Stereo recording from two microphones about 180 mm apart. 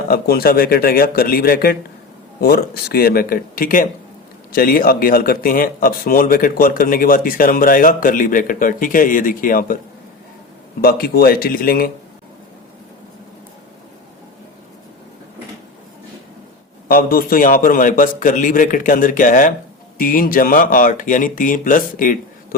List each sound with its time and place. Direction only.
0.1 s speech: 55° left (ahead or behind)
10.8 s speech: 60° left (ahead or behind)
16.9 s speech: 55° left (ahead or behind)